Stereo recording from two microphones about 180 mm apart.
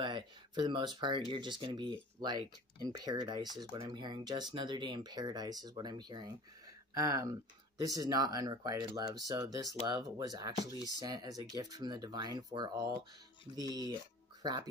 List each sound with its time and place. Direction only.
0.0 s speech: 25° right (ahead or behind)